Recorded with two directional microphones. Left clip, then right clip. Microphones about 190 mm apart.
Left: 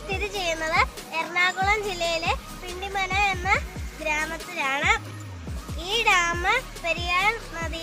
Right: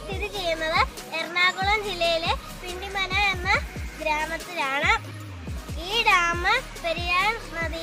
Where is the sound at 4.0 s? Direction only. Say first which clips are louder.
Right 1 dB; 20° left (ahead or behind).